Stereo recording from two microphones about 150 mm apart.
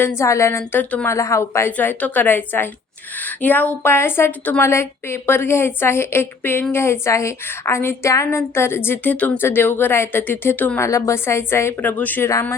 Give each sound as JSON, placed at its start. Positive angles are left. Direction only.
{"t": 0.2, "sound": "a woman's voice", "side_deg": 20}